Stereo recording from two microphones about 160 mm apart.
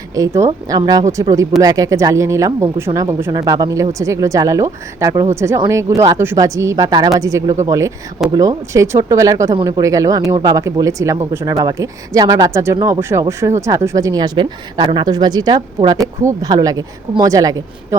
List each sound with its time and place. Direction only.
0.1 s speech: 20° right (ahead or behind)